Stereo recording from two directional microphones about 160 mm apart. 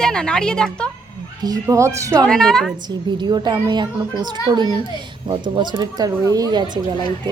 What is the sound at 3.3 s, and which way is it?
A woman's voice, 25° right (ahead or behind).